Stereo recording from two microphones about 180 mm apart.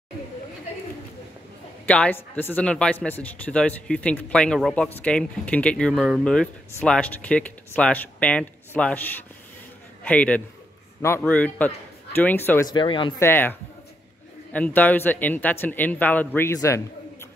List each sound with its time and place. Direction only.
1.9 s a man's voice: 10° left (ahead or behind)
12.6 s speech: 25° left (ahead or behind)
13.2 s speech: 10° left (ahead or behind)